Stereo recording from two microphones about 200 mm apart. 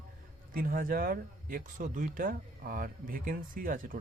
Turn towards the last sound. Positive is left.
turn(degrees=-45)  # may be behind; listen again after turning